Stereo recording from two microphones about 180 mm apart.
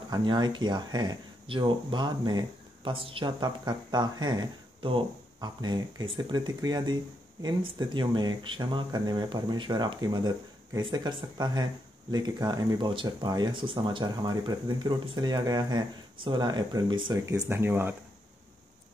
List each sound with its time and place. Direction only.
0.1 s speech: 25° right (ahead or behind)